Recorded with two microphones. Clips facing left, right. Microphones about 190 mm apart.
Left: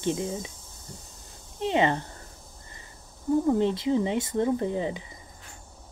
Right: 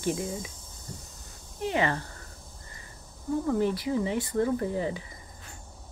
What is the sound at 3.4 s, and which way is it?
Hum, 25° left (ahead or behind).